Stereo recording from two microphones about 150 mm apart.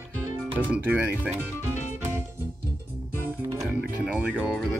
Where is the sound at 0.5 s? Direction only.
10° right (ahead or behind).